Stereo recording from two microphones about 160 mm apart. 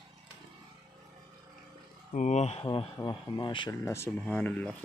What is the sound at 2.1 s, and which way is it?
Speech, 50° left (ahead or behind).